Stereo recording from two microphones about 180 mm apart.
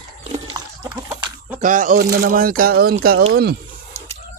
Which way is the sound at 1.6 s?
45° right (ahead or behind).